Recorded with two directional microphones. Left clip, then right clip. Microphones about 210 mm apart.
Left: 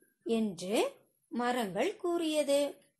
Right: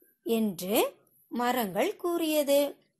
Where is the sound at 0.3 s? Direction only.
35° right (ahead or behind).